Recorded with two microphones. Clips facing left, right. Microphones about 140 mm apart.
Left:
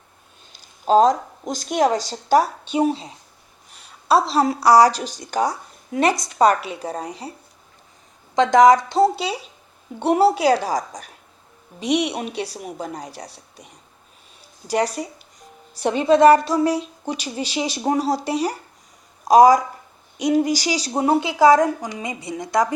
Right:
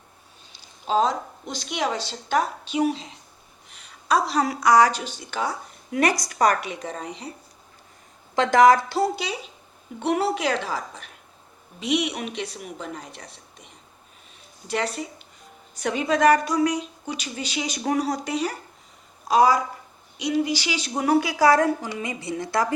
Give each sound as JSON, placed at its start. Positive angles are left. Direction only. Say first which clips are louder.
{"t": 0.9, "sound": "a woman's voice", "louder": "left 7 dB", "side_deg": 45}
{"t": 4.1, "sound": "a woman's voice", "louder": "left 4 dB", "side_deg": 30}
{"t": 5.9, "sound": "a woman's voice", "louder": "left 3 dB", "side_deg": 25}
{"t": 8.4, "sound": "a woman's voice", "louder": "left 3 dB", "side_deg": 20}
{"t": 14.7, "sound": "a woman's voice", "louder": "left 5 dB", "side_deg": 40}